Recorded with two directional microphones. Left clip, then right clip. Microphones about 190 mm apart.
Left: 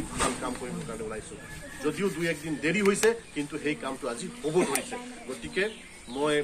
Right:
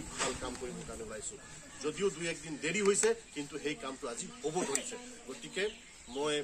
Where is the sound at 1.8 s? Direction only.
65° right (ahead or behind).